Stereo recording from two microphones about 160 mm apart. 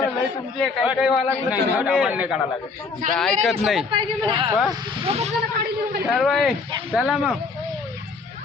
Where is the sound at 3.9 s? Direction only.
30° right (ahead or behind).